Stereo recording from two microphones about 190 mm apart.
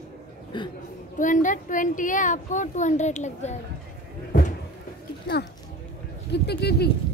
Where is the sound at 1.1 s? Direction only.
40° left (ahead or behind).